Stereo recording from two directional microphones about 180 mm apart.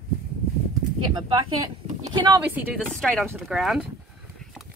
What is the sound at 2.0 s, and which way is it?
Speech, 25° right (ahead or behind).